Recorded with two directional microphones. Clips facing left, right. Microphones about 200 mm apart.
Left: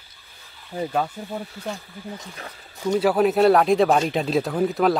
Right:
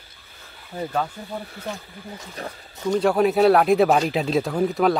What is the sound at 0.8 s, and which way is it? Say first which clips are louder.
Speech: left 1 dB; 10° left (ahead or behind).